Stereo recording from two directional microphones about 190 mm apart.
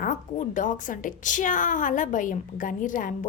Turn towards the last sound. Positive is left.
turn(degrees=45)  # may be behind; listen again after turning